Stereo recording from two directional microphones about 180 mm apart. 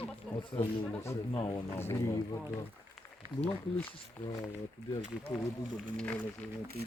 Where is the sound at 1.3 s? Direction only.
25° left (ahead or behind).